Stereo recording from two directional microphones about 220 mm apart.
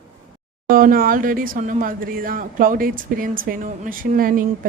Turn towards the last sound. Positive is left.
turn(degrees=-40)  # may be behind; listen again after turning